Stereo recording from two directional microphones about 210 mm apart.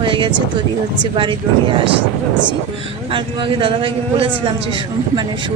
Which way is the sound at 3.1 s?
25° right (ahead or behind).